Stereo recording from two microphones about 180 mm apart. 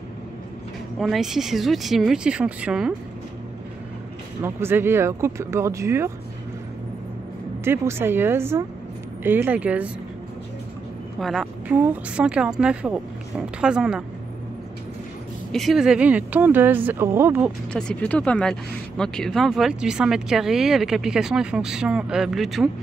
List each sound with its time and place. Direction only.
0.9 s speech: centre (ahead or behind)
4.4 s speech: 15° right (ahead or behind)
7.6 s speech: 15° right (ahead or behind)
11.1 s speech: centre (ahead or behind)
15.5 s speech: centre (ahead or behind)
17.7 s speech: 5° left (ahead or behind)